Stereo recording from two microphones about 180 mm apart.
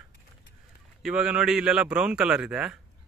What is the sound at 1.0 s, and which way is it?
Speech, 5° right (ahead or behind).